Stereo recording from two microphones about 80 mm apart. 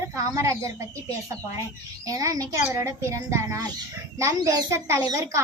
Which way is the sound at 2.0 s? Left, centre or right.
Right.